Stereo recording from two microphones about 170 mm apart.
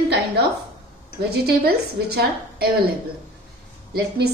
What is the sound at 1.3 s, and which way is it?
A woman's voice, 70° right (ahead or behind).